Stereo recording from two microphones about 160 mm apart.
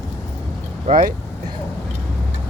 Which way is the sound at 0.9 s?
40° right (ahead or behind).